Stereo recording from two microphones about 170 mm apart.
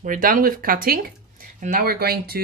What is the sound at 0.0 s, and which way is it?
Speech, 55° right (ahead or behind).